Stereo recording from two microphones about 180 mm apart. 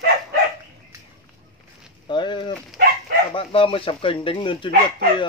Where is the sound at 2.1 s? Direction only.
25° left (ahead or behind).